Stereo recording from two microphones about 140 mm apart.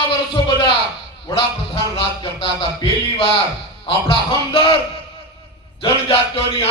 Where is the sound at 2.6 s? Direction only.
40° left (ahead or behind).